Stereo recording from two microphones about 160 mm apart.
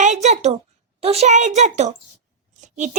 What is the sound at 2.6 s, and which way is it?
Scissors, 50° right (ahead or behind).